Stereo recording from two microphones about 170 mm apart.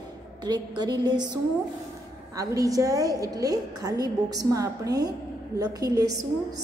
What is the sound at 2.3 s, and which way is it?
A woman's voice, 20° right (ahead or behind).